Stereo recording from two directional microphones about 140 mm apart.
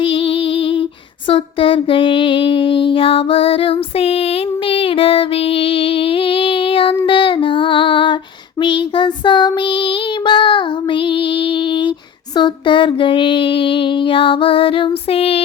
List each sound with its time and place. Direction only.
0.0 s music: 40° left (ahead or behind)
1.3 s female singing: 40° left (ahead or behind)
4.7 s music: 40° left (ahead or behind)
8.6 s female singing: 35° left (ahead or behind)
10.2 s child singing: 35° left (ahead or behind)
12.4 s female singing: 35° left (ahead or behind)